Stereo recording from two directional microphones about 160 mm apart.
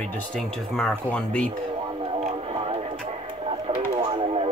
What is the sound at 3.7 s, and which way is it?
Radio, 35° right (ahead or behind).